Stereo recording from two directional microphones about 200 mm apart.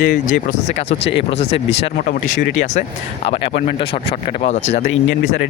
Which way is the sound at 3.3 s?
25° left (ahead or behind).